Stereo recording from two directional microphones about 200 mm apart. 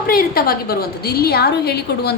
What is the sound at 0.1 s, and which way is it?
A woman's voice, 50° left (ahead or behind).